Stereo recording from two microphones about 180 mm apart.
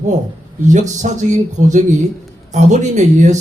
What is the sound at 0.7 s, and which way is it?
A man's voice, 40° right (ahead or behind).